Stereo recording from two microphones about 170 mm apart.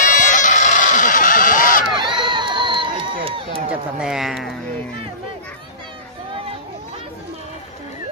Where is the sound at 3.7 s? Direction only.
5° right (ahead or behind).